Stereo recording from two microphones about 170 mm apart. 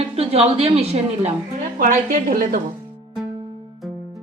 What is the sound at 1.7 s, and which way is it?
Speech, 50° right (ahead or behind).